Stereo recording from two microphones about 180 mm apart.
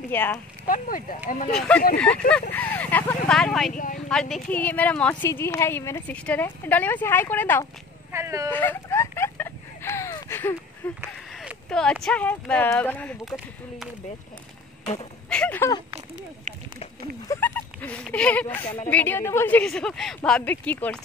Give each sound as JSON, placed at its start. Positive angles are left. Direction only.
{"t": 0.1, "sound": "a woman's voice", "side_deg": 10}
{"t": 0.7, "sound": "speech", "side_deg": 50}
{"t": 1.5, "sound": "speech", "side_deg": 0}
{"t": 3.7, "sound": "speech", "side_deg": 50}
{"t": 4.1, "sound": "a woman's voice", "side_deg": 5}
{"t": 8.1, "sound": "speech", "side_deg": -15}
{"t": 8.5, "sound": "a sound", "side_deg": 10}
{"t": 10.8, "sound": "a woman's voice", "side_deg": 10}
{"t": 15.2, "sound": "speech", "side_deg": 5}
{"t": 16.5, "sound": "a sound", "side_deg": -45}
{"t": 17.3, "sound": "a sound", "side_deg": 10}
{"t": 18.9, "sound": "a woman's voice", "side_deg": 10}